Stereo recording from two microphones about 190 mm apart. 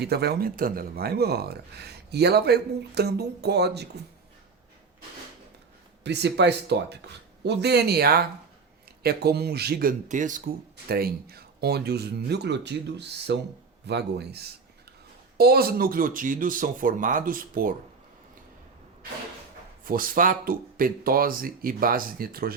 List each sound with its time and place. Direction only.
0.0 s speech: 60° right (ahead or behind)
6.0 s speech: 65° right (ahead or behind)
10.1 s speech: 40° right (ahead or behind)
10.8 s speech: 55° right (ahead or behind)
19.8 s speech: 50° right (ahead or behind)